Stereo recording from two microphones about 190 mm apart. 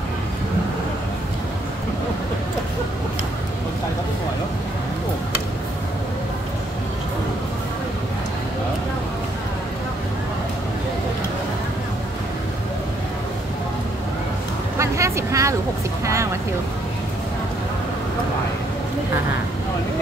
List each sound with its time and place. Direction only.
14.8 s vehicle: 15° right (ahead or behind)